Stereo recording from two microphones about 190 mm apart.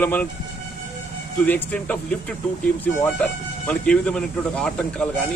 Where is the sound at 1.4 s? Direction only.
10° left (ahead or behind).